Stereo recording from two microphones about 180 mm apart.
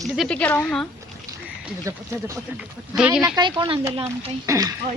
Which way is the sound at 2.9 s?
20° right (ahead or behind).